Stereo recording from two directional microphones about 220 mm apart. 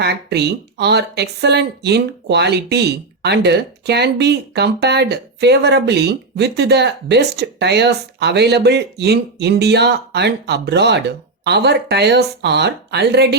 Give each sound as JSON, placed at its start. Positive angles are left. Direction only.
{"t": 0.0, "sound": "speech", "side_deg": -50}